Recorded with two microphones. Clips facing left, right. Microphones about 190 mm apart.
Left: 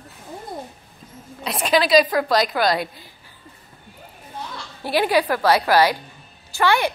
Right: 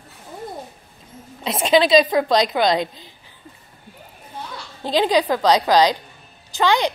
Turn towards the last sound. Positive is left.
turn(degrees=-15)  # may be behind; listen again after turning